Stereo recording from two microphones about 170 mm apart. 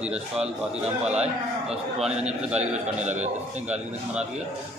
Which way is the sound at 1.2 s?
40° right (ahead or behind).